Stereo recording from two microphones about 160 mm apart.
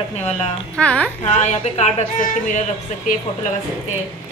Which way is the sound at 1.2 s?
45° left (ahead or behind).